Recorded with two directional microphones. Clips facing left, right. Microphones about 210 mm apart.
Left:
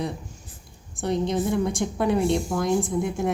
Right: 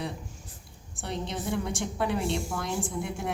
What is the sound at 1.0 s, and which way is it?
A woman's voice, 40° left (ahead or behind).